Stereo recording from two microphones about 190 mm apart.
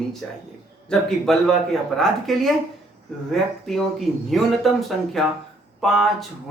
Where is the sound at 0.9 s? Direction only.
Centre (ahead or behind).